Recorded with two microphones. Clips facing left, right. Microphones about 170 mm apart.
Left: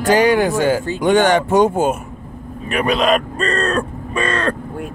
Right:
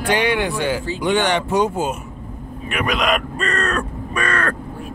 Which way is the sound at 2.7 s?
30° left (ahead or behind).